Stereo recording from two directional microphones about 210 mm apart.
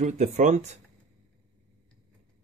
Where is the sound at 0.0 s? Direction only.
35° right (ahead or behind).